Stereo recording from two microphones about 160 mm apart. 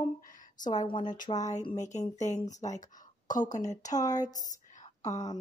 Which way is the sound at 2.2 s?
45° left (ahead or behind).